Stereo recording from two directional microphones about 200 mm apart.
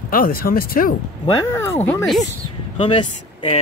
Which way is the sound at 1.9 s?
5° left (ahead or behind).